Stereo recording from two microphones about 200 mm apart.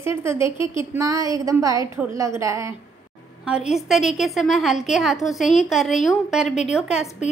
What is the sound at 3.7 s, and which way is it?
A woman's voice, centre (ahead or behind).